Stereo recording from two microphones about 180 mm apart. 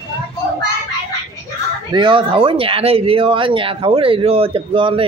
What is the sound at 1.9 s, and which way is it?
Speech, 30° right (ahead or behind).